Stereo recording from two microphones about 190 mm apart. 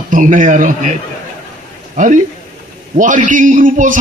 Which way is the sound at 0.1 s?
45° right (ahead or behind).